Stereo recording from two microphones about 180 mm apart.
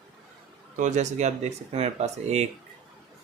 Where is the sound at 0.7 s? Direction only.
40° right (ahead or behind).